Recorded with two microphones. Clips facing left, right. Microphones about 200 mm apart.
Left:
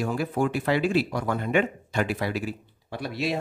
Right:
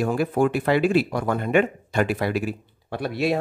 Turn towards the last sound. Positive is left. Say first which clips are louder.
# right 5 dB
turn(degrees=-55)  # may be behind; listen again after turning